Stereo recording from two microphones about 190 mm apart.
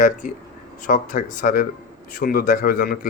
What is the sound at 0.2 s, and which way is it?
Speech, 45° left (ahead or behind).